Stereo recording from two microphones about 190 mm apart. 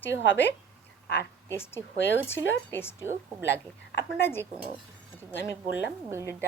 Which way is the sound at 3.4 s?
65° left (ahead or behind).